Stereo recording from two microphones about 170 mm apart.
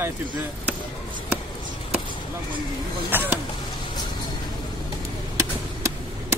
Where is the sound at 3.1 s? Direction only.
10° right (ahead or behind).